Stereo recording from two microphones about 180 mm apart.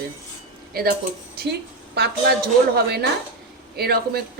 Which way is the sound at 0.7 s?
55° right (ahead or behind).